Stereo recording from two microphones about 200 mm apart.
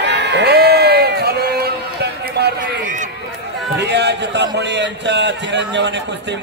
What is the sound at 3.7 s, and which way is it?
A man's voice, 60° right (ahead or behind).